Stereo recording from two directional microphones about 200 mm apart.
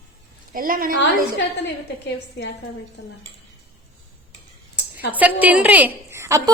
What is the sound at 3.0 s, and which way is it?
Speech, 60° left (ahead or behind).